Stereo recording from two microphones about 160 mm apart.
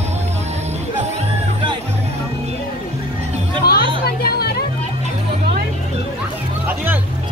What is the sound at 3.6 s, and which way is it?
Music, 80° left.